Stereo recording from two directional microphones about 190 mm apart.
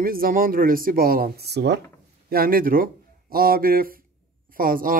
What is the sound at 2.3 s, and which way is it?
Speech, 50° right (ahead or behind).